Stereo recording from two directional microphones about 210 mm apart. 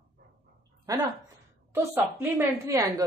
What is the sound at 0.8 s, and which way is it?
A woman's voice, 15° right (ahead or behind).